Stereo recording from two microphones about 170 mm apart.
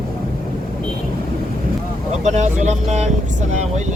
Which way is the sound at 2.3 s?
40° right (ahead or behind).